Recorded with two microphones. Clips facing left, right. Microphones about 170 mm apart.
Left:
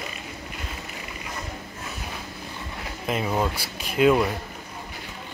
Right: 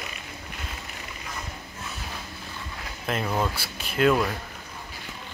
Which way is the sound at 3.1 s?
10° left (ahead or behind).